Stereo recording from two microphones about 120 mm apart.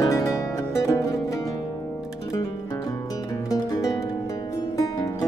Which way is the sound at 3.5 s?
30° left (ahead or behind).